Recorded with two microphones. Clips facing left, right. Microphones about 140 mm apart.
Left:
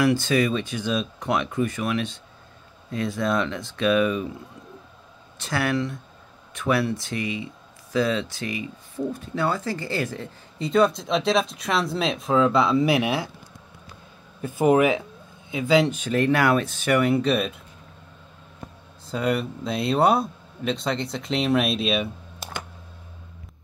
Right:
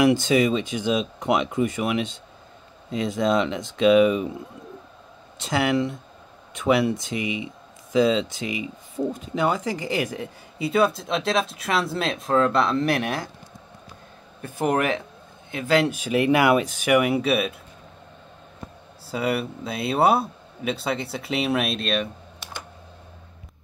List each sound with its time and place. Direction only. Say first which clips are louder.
0.0 s speech: right 2 dB; 20° right (ahead or behind)
5.4 s speech: right 3 dB; 20° right (ahead or behind); by 13.3 s 10° left (ahead or behind)
14.4 s speech: left 5 dB; 10° left (ahead or behind)
19.0 s speech: left 1 dB; 5° right (ahead or behind)